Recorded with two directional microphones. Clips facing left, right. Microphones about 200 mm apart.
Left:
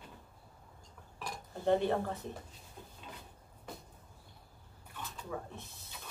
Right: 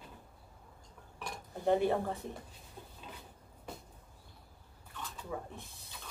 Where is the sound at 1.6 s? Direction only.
15° right (ahead or behind).